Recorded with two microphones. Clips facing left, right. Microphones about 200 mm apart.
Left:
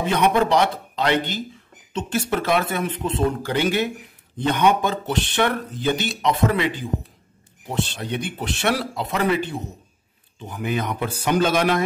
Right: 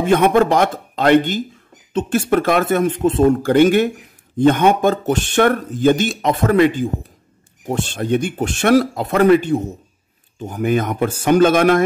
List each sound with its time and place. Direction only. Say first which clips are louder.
0.0 s speech: right 6 dB; 50° right (ahead or behind)